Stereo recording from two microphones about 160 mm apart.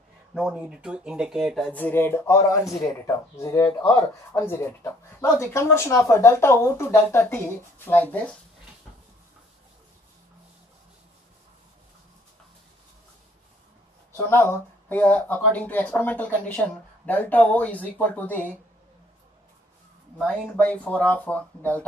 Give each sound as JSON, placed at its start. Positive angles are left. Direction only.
{"t": 0.3, "sound": "speech", "side_deg": 5}
{"t": 14.1, "sound": "speech", "side_deg": 15}
{"t": 20.2, "sound": "speech", "side_deg": 10}